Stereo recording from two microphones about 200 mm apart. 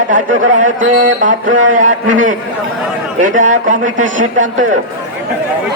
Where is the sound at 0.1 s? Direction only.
40° right (ahead or behind).